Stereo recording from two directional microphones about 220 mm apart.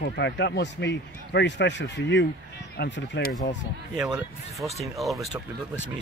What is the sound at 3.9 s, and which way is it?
Speech, 5° right (ahead or behind).